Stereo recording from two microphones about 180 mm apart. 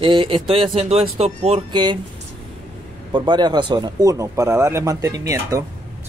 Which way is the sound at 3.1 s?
25° right (ahead or behind).